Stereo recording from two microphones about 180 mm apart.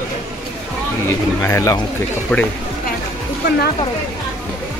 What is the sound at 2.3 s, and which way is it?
Speech, 5° left (ahead or behind).